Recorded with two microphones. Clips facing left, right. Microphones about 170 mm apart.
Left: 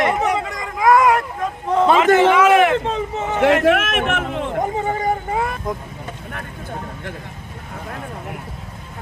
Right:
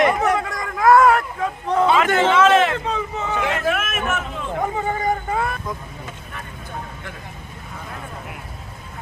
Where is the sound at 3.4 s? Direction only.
70° left (ahead or behind).